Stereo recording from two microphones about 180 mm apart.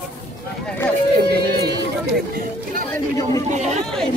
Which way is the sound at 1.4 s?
65° right (ahead or behind).